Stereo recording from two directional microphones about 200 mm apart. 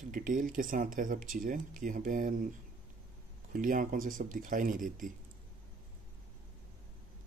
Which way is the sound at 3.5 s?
45° right (ahead or behind).